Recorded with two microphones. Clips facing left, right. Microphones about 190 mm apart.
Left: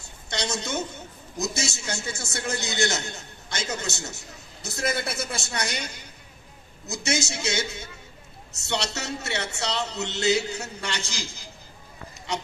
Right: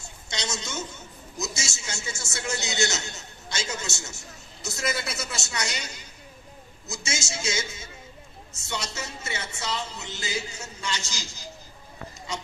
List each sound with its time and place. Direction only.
0.3 s a man's voice: 60° left (ahead or behind)
12.3 s speech: 65° left (ahead or behind)